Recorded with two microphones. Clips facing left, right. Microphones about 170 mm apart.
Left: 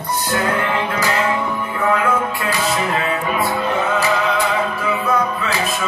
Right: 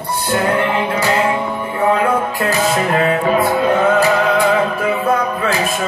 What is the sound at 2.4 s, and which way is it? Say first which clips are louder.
Music: right 4 dB; 55° right (ahead or behind).